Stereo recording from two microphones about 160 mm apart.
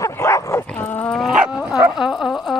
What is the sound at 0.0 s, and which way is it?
Bow-wow, 15° left (ahead or behind).